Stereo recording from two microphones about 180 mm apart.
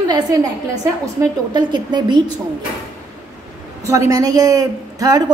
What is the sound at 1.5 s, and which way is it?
Speech, 25° right (ahead or behind).